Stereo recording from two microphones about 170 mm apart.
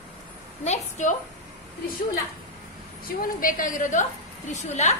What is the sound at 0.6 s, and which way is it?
Speech, 45° left (ahead or behind).